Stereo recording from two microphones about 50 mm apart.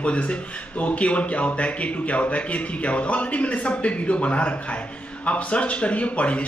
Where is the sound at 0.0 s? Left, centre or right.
Left.